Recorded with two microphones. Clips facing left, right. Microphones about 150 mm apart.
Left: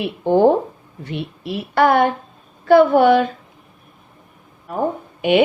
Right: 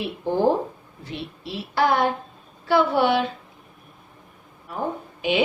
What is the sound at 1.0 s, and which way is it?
A woman's voice, 60° left (ahead or behind).